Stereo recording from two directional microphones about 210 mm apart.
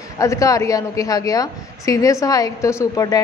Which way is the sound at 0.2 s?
15° left (ahead or behind).